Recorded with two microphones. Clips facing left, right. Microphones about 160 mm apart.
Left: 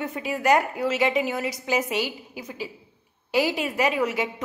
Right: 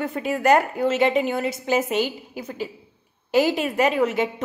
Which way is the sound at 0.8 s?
30° right (ahead or behind).